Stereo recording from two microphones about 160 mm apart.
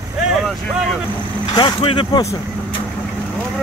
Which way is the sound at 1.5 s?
30° left (ahead or behind).